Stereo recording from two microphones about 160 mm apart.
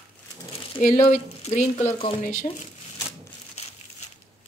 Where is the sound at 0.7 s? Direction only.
50° left (ahead or behind).